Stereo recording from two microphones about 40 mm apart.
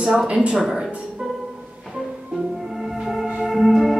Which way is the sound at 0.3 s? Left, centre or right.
Right.